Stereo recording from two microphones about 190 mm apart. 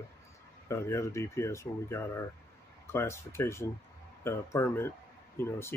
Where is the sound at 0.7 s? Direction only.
15° left (ahead or behind).